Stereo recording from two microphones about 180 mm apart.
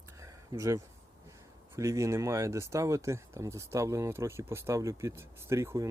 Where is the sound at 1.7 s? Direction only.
15° right (ahead or behind).